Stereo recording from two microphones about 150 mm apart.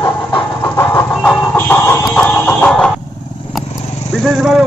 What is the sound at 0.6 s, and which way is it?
Music, 15° left (ahead or behind).